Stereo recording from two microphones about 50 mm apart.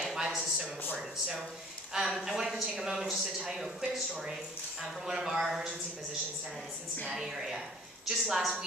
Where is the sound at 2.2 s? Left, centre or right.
Centre.